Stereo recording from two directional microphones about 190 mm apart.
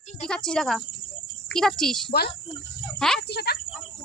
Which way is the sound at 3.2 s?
55° left (ahead or behind).